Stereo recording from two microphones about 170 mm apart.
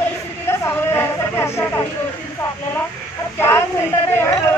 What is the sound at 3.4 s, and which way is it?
Speech, 15° left (ahead or behind).